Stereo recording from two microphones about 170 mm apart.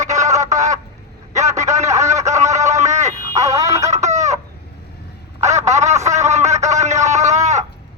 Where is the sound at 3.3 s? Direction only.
20° right (ahead or behind).